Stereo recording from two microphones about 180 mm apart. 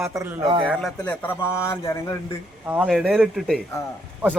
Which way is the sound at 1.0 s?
10° left (ahead or behind).